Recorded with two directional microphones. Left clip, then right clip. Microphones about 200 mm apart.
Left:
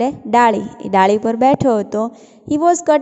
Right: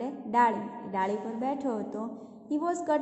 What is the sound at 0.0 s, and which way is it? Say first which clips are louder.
A woman's voice: left 13 dB; 45° left (ahead or behind).